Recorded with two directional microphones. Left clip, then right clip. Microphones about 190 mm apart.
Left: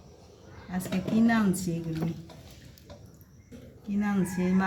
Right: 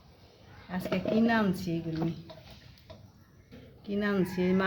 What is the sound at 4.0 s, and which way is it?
Speech, 55° right (ahead or behind).